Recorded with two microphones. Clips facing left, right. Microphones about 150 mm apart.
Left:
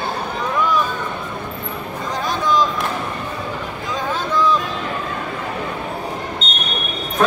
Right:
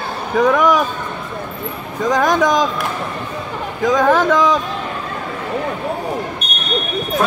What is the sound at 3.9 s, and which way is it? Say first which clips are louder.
Speech: right 11 dB; 90° right.